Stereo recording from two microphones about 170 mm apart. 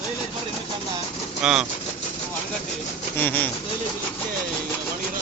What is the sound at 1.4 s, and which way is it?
Speech, 5° right (ahead or behind).